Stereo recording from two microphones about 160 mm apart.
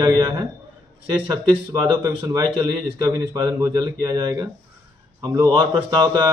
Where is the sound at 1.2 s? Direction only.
20° right (ahead or behind).